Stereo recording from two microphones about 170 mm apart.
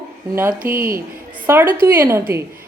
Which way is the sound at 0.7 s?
15° right (ahead or behind).